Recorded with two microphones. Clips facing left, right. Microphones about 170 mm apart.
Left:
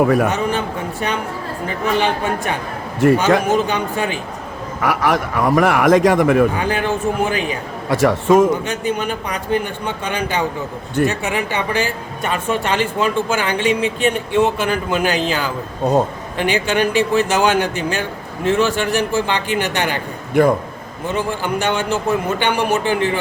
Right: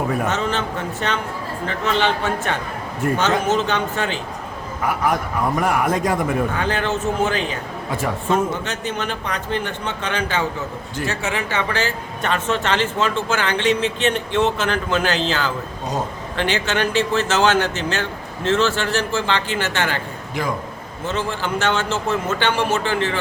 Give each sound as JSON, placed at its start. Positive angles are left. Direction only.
{"t": 0.0, "sound": "speech", "side_deg": 80}
{"t": 0.3, "sound": "speech", "side_deg": 10}
{"t": 3.0, "sound": "a man's voice", "side_deg": 90}
{"t": 3.4, "sound": "speech", "side_deg": 10}
{"t": 4.8, "sound": "a man's voice", "side_deg": 90}
{"t": 6.6, "sound": "speech", "side_deg": 10}
{"t": 7.9, "sound": "speech", "side_deg": 80}
{"t": 8.6, "sound": "speech", "side_deg": 10}
{"t": 15.8, "sound": "a man's voice", "side_deg": 60}
{"t": 16.4, "sound": "speech", "side_deg": 15}
{"t": 20.3, "sound": "a man's voice", "side_deg": 55}
{"t": 21.1, "sound": "speech", "side_deg": 15}